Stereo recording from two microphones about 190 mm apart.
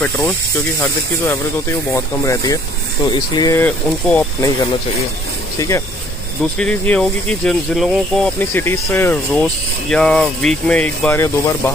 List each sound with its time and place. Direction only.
1.2 s speech: 15° left (ahead or behind)
3.6 s speech: 10° left (ahead or behind)
5.6 s speech: 15° left (ahead or behind)
6.6 s speech: 5° left (ahead or behind)
8.4 s speech: 10° left (ahead or behind)